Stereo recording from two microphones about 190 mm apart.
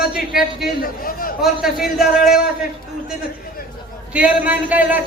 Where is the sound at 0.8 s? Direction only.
50° left (ahead or behind).